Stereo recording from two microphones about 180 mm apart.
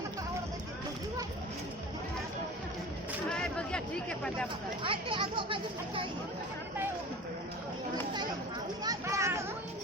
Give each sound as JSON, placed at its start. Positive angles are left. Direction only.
{"t": 3.2, "sound": "chatter", "side_deg": 5}
{"t": 4.8, "sound": "speech", "side_deg": -30}
{"t": 8.8, "sound": "a sound", "side_deg": -20}